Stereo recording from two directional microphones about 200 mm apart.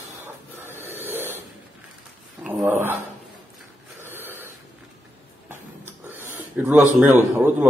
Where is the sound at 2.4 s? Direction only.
10° right (ahead or behind).